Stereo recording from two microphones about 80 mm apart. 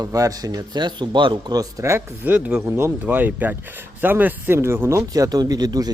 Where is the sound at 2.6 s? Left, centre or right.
Right.